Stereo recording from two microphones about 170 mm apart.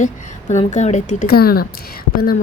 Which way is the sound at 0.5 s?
45° left (ahead or behind).